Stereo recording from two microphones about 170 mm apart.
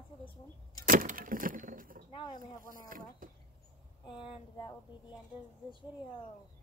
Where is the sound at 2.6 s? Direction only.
55° right (ahead or behind).